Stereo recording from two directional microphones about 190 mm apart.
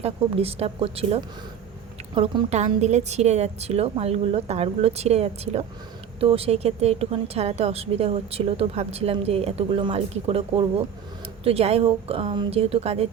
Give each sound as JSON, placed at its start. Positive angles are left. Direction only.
{"t": 0.0, "sound": "a woman's voice", "side_deg": -30}